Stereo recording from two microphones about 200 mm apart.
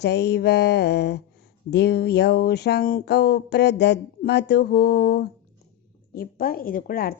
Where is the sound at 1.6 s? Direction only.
55° left (ahead or behind).